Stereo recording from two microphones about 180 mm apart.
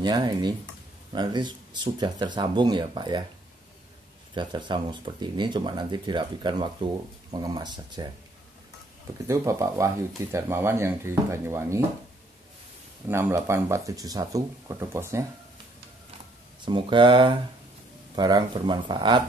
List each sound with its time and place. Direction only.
0.0 s speech: 25° right (ahead or behind)
4.3 s speech: 25° right (ahead or behind)
9.3 s speech: 15° right (ahead or behind)
13.1 s speech: 15° right (ahead or behind)
16.6 s speech: 25° right (ahead or behind)